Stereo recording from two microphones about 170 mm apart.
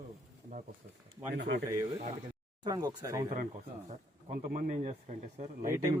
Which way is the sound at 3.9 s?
50° right (ahead or behind).